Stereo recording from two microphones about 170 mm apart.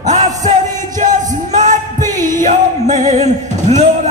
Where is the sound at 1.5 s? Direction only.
45° right (ahead or behind).